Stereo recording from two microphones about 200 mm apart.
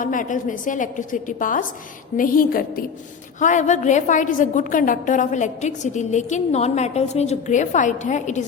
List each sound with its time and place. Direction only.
0.0 s a woman's voice: 40° left (ahead or behind)